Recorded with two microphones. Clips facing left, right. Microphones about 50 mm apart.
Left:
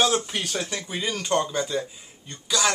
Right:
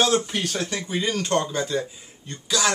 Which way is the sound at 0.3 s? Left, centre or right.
Centre.